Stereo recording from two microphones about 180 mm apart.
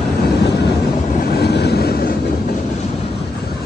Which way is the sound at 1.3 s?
65° left (ahead or behind).